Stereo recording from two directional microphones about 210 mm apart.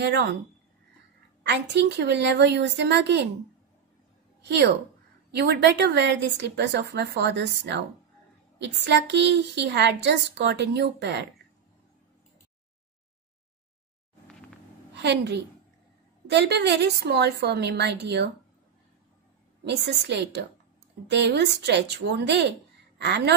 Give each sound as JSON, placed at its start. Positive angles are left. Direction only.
{"t": 0.0, "sound": "a woman's voice", "side_deg": -55}
{"t": 1.4, "sound": "a woman's voice", "side_deg": -55}
{"t": 4.4, "sound": "a woman's voice", "side_deg": -55}
{"t": 15.0, "sound": "a woman's voice", "side_deg": -55}
{"t": 19.6, "sound": "a woman's voice", "side_deg": -55}